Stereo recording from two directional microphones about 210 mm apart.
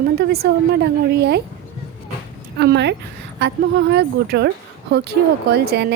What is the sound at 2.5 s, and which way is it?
Speech, 55° right (ahead or behind).